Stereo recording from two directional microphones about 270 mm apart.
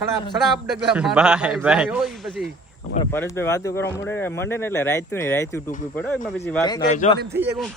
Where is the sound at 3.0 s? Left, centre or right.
Centre.